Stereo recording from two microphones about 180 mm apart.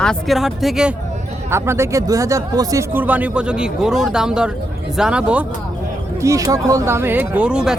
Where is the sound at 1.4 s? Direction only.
15° right (ahead or behind).